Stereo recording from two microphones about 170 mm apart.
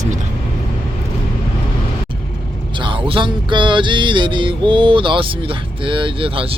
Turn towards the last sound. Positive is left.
turn(degrees=-30)  # may be behind; listen again after turning